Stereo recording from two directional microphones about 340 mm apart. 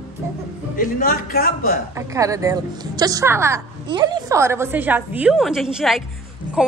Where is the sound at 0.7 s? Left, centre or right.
Left.